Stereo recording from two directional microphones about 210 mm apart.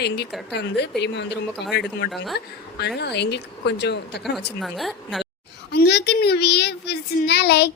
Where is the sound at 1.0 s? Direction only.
55° left (ahead or behind).